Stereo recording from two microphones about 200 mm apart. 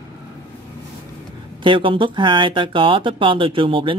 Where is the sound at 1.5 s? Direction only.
25° right (ahead or behind).